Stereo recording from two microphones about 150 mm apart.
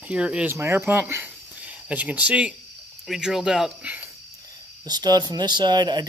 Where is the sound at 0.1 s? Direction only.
5° right (ahead or behind).